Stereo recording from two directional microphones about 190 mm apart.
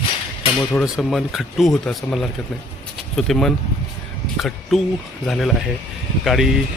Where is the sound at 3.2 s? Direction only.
Centre (ahead or behind).